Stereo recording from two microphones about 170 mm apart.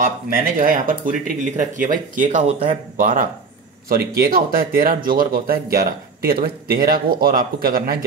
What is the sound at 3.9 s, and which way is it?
Speech, 60° right (ahead or behind).